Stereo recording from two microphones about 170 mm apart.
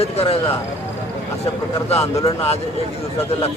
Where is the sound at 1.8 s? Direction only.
35° left (ahead or behind).